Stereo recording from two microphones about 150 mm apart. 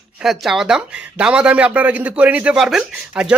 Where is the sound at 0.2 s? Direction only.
Centre (ahead or behind).